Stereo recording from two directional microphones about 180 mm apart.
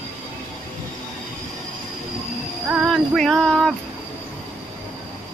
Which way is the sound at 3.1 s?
5° left (ahead or behind).